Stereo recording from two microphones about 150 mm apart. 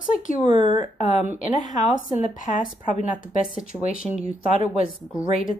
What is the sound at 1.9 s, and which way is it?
Speech, 60° left (ahead or behind).